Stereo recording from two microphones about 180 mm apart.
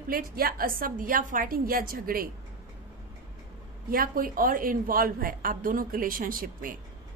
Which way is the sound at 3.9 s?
50° right (ahead or behind).